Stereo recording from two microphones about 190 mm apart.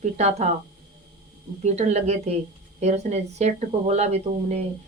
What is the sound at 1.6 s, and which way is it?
Speech, 35° right (ahead or behind).